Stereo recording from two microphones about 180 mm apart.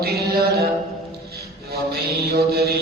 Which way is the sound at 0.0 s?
65° right (ahead or behind).